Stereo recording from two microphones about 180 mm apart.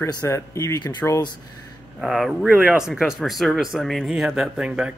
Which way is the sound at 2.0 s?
Centre (ahead or behind).